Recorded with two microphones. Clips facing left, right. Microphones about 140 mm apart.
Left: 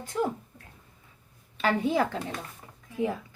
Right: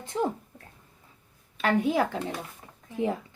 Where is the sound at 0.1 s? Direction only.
25° right (ahead or behind).